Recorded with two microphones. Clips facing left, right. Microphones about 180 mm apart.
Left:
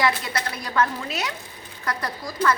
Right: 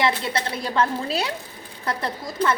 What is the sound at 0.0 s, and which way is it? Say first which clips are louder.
Speech: right 1 dB; 25° right (ahead or behind).